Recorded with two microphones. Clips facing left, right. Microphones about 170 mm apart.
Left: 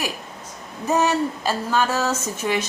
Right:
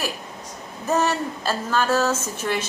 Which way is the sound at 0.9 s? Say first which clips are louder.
Left 2 dB; 15° left (ahead or behind).